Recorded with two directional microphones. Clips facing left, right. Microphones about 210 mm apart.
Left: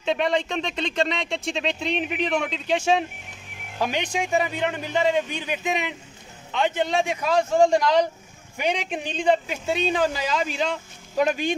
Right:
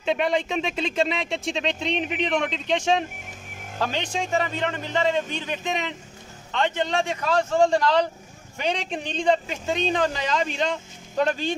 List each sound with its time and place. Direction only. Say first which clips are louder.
0.0 s speech: even; centre (ahead or behind)